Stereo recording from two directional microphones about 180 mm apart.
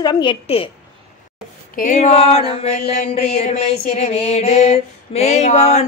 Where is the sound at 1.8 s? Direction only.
40° left (ahead or behind).